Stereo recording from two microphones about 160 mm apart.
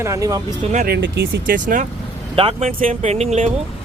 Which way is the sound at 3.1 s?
45° right (ahead or behind).